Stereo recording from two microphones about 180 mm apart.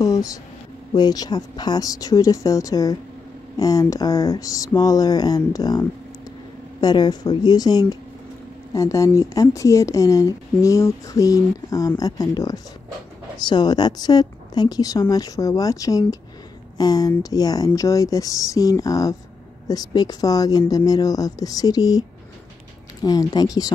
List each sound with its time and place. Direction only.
0.0 s a woman's voice: 20° left (ahead or behind)
23.0 s a woman's voice: 20° left (ahead or behind)